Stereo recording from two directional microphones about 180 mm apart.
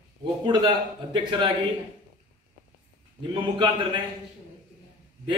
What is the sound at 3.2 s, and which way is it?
Speech, 25° right (ahead or behind).